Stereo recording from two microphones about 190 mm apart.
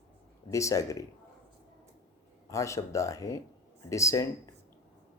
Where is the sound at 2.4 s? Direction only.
15° left (ahead or behind).